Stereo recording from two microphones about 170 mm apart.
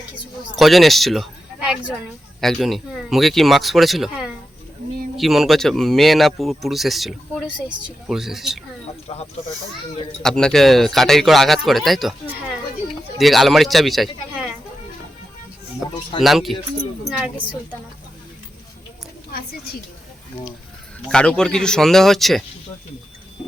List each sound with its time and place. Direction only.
0.5 s speech: centre (ahead or behind)
9.1 s speech: 35° left (ahead or behind)
10.2 s speech: 5° left (ahead or behind)
13.1 s speech: centre (ahead or behind)
16.2 s speech: centre (ahead or behind)
21.1 s speech: 5° left (ahead or behind)